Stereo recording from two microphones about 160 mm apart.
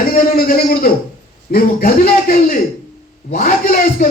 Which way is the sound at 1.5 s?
60° left (ahead or behind).